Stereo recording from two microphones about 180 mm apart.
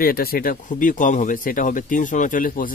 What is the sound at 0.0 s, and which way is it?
Speech, 55° left (ahead or behind).